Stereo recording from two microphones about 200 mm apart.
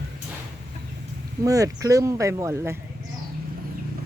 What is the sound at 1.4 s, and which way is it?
Speech, 15° right (ahead or behind).